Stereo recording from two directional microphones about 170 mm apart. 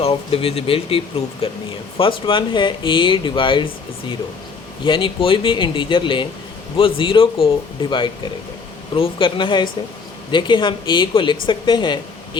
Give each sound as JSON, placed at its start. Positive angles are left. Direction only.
{"t": 0.0, "sound": "a woman's voice", "side_deg": 35}
{"t": 4.8, "sound": "a woman's voice", "side_deg": 30}